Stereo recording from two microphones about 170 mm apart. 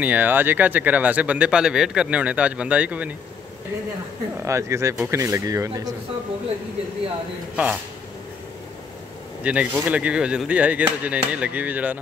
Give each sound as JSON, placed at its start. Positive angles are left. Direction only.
{"t": 0.0, "sound": "speech", "side_deg": -10}
{"t": 4.5, "sound": "speech", "side_deg": -15}
{"t": 7.5, "sound": "speech", "side_deg": -10}
{"t": 9.4, "sound": "speech", "side_deg": -5}